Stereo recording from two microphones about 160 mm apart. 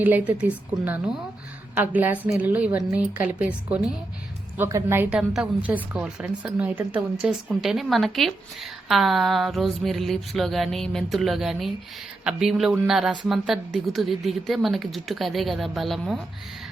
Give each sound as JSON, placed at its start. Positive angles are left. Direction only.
{"t": 0.0, "sound": "a woman's voice", "side_deg": -10}
{"t": 5.1, "sound": "a woman's voice", "side_deg": -5}